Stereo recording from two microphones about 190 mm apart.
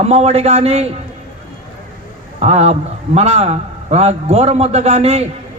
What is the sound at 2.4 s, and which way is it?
A man's voice, 35° right (ahead or behind).